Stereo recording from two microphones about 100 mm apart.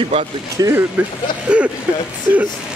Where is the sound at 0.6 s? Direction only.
30° right (ahead or behind).